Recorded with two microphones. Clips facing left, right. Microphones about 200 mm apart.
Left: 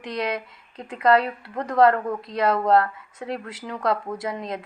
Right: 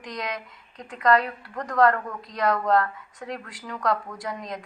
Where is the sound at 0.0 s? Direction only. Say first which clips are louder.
Left 6 dB; 30° left (ahead or behind).